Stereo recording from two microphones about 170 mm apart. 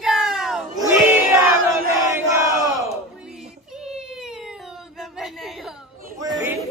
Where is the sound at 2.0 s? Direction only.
15° right (ahead or behind).